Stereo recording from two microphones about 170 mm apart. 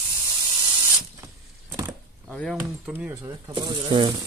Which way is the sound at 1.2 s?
20° right (ahead or behind).